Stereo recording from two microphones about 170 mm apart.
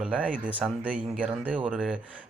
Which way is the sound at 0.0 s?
5° right (ahead or behind).